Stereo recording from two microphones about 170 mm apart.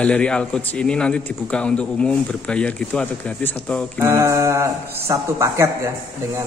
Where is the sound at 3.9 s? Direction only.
15° right (ahead or behind).